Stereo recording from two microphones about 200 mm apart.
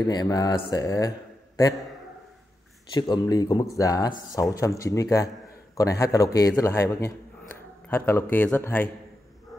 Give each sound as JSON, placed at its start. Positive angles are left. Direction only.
{"t": 0.0, "sound": "speech", "side_deg": 20}
{"t": 2.9, "sound": "a man's voice", "side_deg": 20}